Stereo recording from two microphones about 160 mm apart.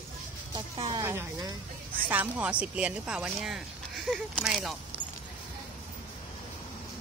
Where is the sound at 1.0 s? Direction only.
15° right (ahead or behind).